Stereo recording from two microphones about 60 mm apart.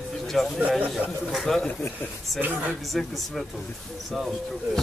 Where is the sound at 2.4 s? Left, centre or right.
Right.